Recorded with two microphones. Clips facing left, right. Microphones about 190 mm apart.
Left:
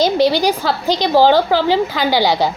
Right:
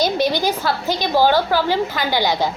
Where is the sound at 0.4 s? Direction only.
15° left (ahead or behind).